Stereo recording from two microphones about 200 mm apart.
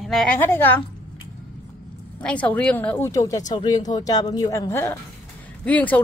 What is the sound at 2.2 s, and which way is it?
A woman's voice, 5° left (ahead or behind).